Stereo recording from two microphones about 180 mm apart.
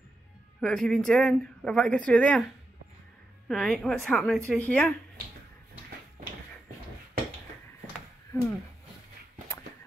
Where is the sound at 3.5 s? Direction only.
5° left (ahead or behind).